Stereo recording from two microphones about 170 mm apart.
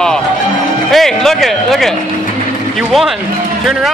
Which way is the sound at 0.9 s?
Centre (ahead or behind).